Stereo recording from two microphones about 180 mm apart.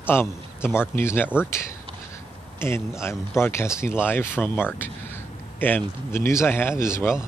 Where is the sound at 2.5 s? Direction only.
15° left (ahead or behind).